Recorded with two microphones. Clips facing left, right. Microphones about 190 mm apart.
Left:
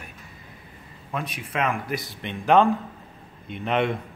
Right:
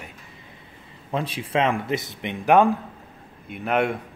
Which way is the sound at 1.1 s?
30° right (ahead or behind).